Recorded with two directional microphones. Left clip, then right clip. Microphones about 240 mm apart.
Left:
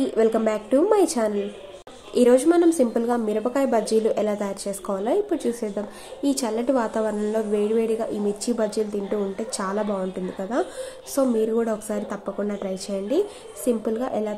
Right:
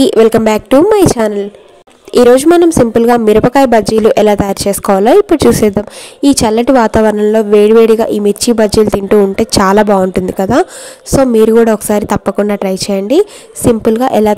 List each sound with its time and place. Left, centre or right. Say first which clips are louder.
0.0 s a woman's voice: right 14 dB; right